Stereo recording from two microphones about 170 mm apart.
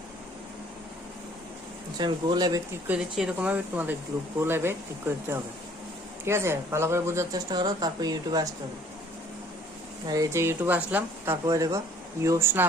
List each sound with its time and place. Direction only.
2.0 s speech: 25° right (ahead or behind)
2.8 s speech: 10° right (ahead or behind)
10.1 s speech: 20° right (ahead or behind)
11.4 s speech: 20° right (ahead or behind)